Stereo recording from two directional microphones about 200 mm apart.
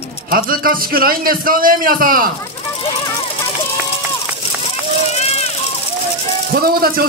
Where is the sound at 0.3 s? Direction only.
45° right (ahead or behind).